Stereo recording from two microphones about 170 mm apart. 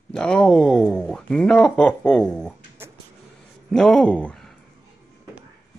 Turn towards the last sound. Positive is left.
turn(degrees=5)  # may be behind; listen again after turning